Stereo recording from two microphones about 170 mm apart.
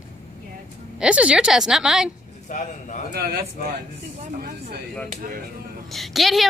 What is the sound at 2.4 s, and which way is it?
Speech, 45° left (ahead or behind).